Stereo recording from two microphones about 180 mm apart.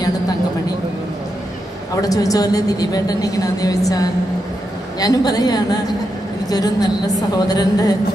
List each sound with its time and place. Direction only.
2.0 s a woman's voice: 20° left (ahead or behind)